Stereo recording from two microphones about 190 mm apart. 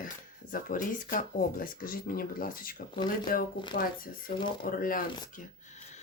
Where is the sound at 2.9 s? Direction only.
25° left (ahead or behind).